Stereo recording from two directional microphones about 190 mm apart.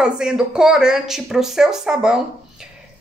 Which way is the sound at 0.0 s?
5° right (ahead or behind).